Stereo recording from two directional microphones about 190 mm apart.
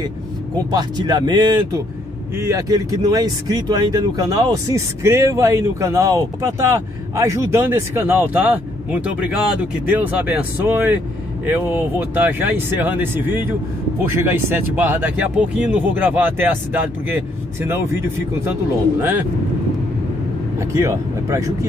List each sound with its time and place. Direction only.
0.7 s speech: 20° right (ahead or behind)
20.5 s speech: 15° right (ahead or behind)